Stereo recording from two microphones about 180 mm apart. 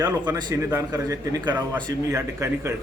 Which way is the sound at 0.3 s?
20° right (ahead or behind).